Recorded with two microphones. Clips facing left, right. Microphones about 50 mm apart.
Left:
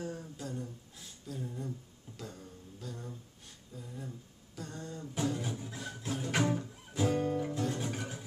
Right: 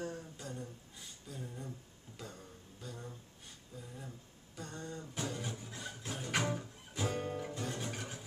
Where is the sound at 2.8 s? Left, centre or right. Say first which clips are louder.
Left 3 dB; centre.